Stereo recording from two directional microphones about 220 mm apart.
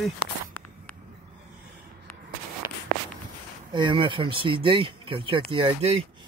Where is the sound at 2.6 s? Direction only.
10° right (ahead or behind).